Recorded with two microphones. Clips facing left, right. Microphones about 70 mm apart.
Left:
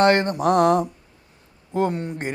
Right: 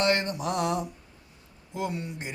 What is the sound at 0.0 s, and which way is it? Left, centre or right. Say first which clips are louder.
Speech: left 9 dB; left.